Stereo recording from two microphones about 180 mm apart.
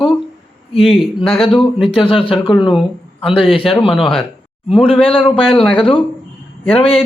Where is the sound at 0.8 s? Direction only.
Centre (ahead or behind).